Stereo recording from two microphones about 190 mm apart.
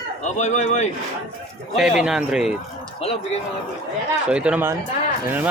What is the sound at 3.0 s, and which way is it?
Speech, 30° left (ahead or behind).